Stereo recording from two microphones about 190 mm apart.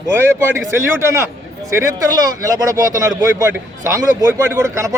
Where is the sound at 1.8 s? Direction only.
15° right (ahead or behind).